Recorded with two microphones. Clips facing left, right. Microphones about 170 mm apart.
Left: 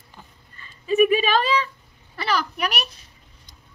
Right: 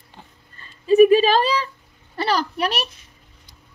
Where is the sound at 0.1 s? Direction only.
35° right (ahead or behind).